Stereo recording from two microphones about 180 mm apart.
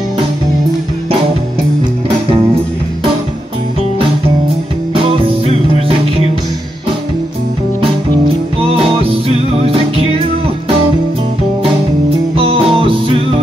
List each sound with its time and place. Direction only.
5.2 s music: 30° right (ahead or behind)
8.6 s music: 30° right (ahead or behind)
12.4 s music: 30° right (ahead or behind)